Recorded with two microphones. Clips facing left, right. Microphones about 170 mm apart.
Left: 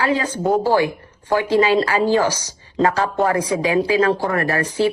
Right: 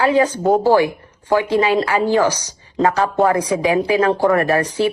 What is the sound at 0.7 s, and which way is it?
Speech, 15° right (ahead or behind).